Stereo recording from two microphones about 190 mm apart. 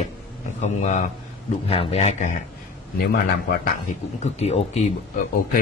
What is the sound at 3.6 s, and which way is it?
A man's voice, 40° left (ahead or behind).